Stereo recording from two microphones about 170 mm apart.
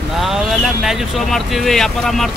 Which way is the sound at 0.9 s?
Centre (ahead or behind).